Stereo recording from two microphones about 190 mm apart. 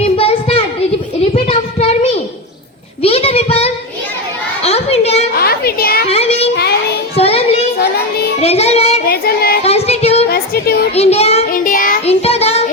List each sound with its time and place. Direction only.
0.0 s a sound: 30° left (ahead or behind)
1.5 s child singing: 35° left (ahead or behind)
4.6 s children playing: 30° left (ahead or behind)
5.3 s a sound: 55° left (ahead or behind)
6.1 s child singing: 30° left (ahead or behind)
9.0 s singing: 55° left (ahead or behind)
9.6 s singing: 35° left (ahead or behind)
10.2 s a sound: 55° left (ahead or behind)
10.9 s child singing: 35° left (ahead or behind)
11.5 s child singing: 45° left (ahead or behind)